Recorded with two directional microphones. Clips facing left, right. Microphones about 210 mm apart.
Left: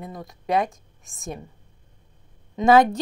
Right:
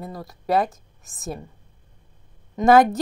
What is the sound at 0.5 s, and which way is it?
Speech, 5° right (ahead or behind).